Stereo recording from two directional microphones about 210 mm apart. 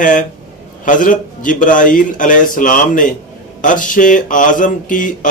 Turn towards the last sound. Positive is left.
turn(degrees=40)  # may be behind; listen again after turning